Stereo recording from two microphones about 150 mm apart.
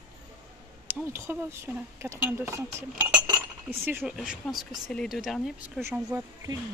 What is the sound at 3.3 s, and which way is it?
Cutlery, 15° right (ahead or behind).